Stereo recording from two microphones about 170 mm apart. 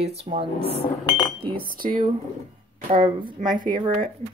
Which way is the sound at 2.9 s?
30° right (ahead or behind).